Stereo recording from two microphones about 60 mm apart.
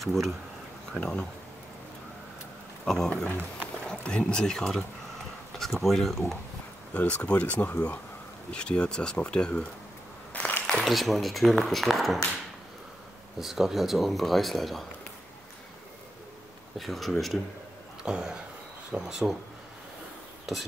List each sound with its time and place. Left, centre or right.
0.0 s speech: centre
0.9 s speech: centre
2.8 s speech: centre
6.9 s speech: left
10.3 s a sound: left
10.9 s speech: centre
13.4 s speech: centre
16.7 s speech: centre
18.0 s speech: centre